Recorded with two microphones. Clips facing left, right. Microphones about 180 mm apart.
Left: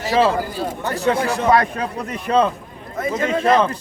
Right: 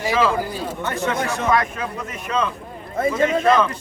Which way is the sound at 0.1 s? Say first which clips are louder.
Left 3 dB; 35° left (ahead or behind).